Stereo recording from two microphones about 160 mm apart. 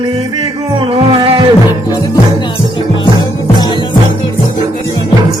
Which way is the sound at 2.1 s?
30° left (ahead or behind).